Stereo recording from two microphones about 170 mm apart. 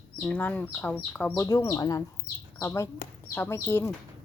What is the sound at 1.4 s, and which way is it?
Speech, 20° left (ahead or behind).